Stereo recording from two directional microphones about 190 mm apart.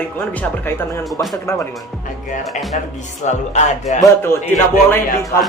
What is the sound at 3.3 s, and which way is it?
Speech, 40° left (ahead or behind).